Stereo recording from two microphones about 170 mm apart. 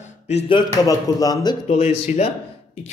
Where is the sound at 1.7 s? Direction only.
40° left (ahead or behind).